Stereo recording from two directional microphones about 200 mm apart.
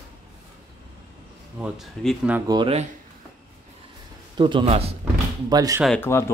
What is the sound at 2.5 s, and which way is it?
Speech, 25° right (ahead or behind).